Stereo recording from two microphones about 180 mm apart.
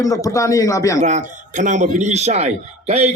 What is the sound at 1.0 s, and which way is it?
A man's voice, 45° right (ahead or behind).